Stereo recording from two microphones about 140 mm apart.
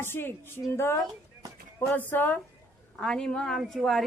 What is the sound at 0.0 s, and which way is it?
A woman's voice, 15° left (ahead or behind).